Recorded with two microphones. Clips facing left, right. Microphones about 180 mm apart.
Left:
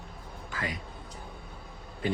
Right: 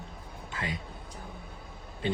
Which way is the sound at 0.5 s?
25° right (ahead or behind).